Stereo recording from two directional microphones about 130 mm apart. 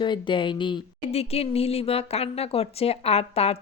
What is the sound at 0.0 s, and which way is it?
Speech, 40° left (ahead or behind).